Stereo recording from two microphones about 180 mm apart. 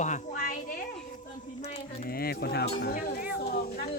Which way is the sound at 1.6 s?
35° left (ahead or behind).